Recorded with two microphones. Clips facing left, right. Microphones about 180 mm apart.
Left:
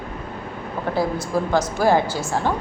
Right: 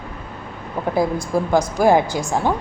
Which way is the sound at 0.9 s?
15° right (ahead or behind).